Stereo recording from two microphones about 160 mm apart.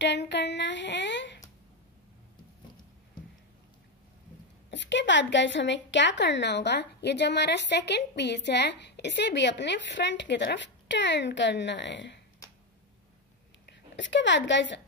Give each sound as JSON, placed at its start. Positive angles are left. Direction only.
{"t": 0.0, "sound": "a sound", "side_deg": 90}
{"t": 4.6, "sound": "a woman's voice", "side_deg": 90}
{"t": 13.7, "sound": "a woman's voice", "side_deg": 90}